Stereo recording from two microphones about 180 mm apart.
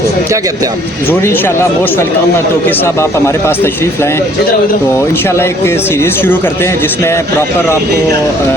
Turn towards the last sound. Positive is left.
turn(degrees=15)  # may be behind; listen again after turning